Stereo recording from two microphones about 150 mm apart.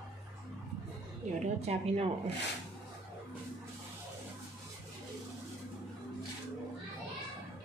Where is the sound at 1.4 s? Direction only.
45° right (ahead or behind).